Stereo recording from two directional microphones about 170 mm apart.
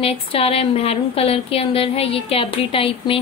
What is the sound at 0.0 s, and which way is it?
A woman's voice, 35° left (ahead or behind).